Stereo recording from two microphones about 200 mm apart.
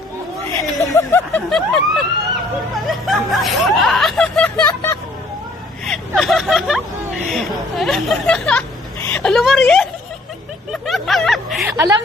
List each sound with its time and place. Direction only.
0.6 s speech: 15° left (ahead or behind)
1.5 s snicker: centre (ahead or behind)
4.6 s vehicle: 15° left (ahead or behind)
5.8 s snicker: centre (ahead or behind)
9.0 s a woman's voice: 5° left (ahead or behind)
10.7 s vehicle: centre (ahead or behind)
11.7 s a woman's voice: 20° right (ahead or behind)